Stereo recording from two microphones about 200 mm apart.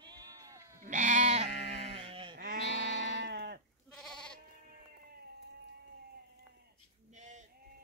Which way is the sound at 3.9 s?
5° left (ahead or behind).